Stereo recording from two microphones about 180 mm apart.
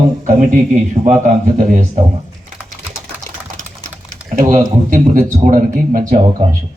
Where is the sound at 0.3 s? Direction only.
45° right (ahead or behind).